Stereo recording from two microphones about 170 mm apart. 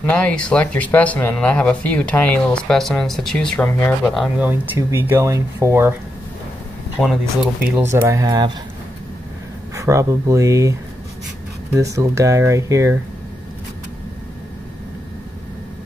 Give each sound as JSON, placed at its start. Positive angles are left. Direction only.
{"t": 0.0, "sound": "speech", "side_deg": 10}
{"t": 4.1, "sound": "speech", "side_deg": -5}
{"t": 7.0, "sound": "speech", "side_deg": 5}
{"t": 7.7, "sound": "speech", "side_deg": -15}
{"t": 9.8, "sound": "speech", "side_deg": -15}